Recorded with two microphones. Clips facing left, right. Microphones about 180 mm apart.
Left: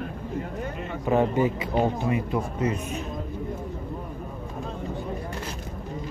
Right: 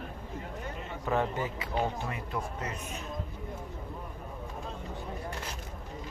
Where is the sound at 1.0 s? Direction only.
15° left (ahead or behind).